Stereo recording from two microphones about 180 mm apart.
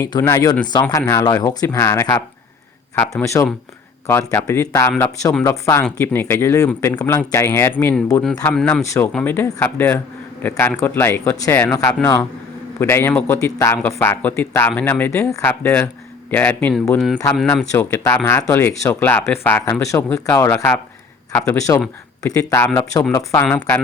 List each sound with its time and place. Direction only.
0.0 s speech: 15° left (ahead or behind)
8.5 s speech: 5° left (ahead or behind)
8.8 s speech: 15° left (ahead or behind)
17.7 s speech: 15° left (ahead or behind)